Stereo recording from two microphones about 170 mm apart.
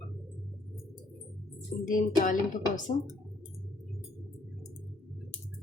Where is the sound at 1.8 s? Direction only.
50° left (ahead or behind).